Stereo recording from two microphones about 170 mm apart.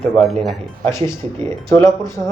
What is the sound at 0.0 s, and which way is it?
Speech, centre (ahead or behind).